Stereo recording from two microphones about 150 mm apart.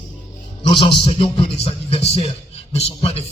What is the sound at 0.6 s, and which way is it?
A man's voice, 35° left (ahead or behind).